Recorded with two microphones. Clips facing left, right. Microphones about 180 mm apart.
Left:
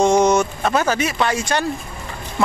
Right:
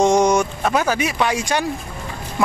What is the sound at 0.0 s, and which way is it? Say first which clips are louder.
Speech: even; 15° right (ahead or behind).